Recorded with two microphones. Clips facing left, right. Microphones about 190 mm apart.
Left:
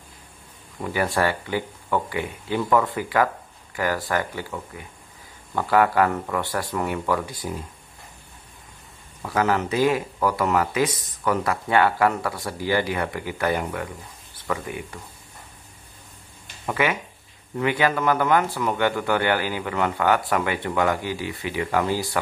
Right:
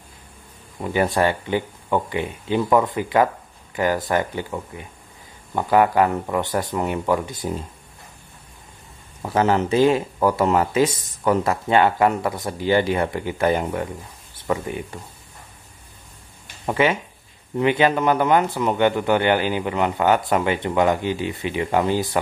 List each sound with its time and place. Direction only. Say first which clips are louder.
0.9 s speech: right 3 dB; 20° right (ahead or behind)
9.2 s speech: right 3 dB; 25° right (ahead or behind)
16.6 s speech: right 4 dB; 25° right (ahead or behind)